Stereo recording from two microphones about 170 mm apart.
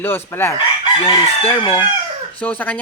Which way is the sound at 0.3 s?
15° left (ahead or behind).